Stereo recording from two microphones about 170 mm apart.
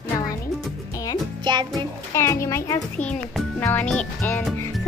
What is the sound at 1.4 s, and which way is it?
Speech, 25° right (ahead or behind).